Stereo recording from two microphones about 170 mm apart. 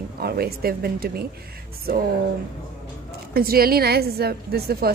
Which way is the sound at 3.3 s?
60° right (ahead or behind).